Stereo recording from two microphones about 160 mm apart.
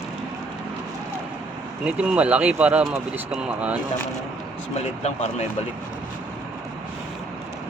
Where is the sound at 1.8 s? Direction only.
10° right (ahead or behind).